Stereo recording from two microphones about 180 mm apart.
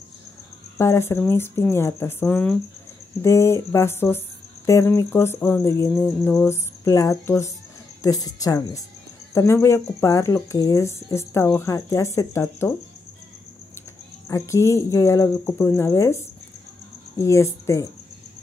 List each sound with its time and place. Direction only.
0.7 s cricket: 15° left (ahead or behind)
8.0 s a woman's voice: 20° left (ahead or behind)
9.3 s cricket: 15° left (ahead or behind)
14.3 s cricket: 15° left (ahead or behind)
17.2 s cricket: 15° left (ahead or behind)